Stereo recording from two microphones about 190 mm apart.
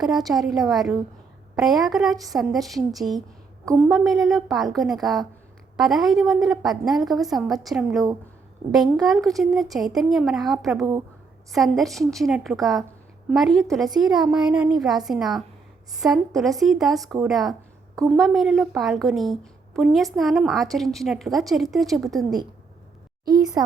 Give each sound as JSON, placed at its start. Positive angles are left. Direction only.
{"t": 0.0, "sound": "a woman's voice", "side_deg": 0}
{"t": 23.6, "sound": "speech", "side_deg": -20}